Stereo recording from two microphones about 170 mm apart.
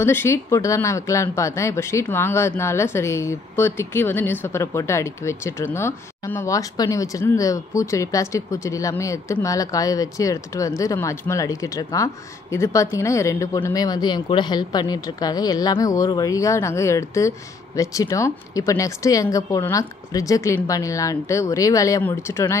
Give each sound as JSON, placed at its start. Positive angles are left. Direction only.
{"t": 0.0, "sound": "speech", "side_deg": 15}